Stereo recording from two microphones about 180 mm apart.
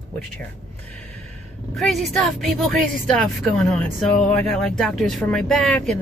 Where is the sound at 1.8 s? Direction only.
Centre (ahead or behind).